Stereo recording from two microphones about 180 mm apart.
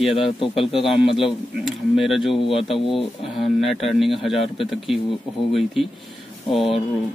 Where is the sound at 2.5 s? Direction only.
30° left (ahead or behind).